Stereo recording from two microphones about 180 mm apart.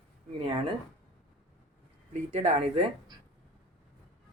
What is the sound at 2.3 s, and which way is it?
Speech, 35° right (ahead or behind).